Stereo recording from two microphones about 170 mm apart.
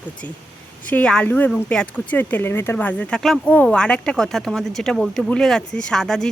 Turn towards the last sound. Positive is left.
turn(degrees=5)  # may be behind; listen again after turning